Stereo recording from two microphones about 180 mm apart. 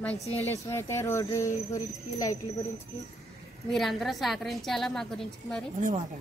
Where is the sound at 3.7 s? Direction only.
Centre (ahead or behind).